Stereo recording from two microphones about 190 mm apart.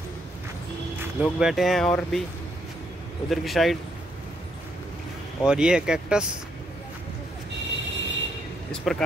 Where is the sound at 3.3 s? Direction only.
Centre (ahead or behind).